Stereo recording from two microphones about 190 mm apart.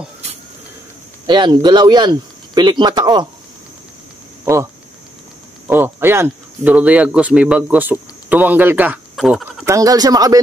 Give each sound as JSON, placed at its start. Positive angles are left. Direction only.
{"t": 1.2, "sound": "speech", "side_deg": -25}
{"t": 5.7, "sound": "speech", "side_deg": -10}
{"t": 9.7, "sound": "speech", "side_deg": -20}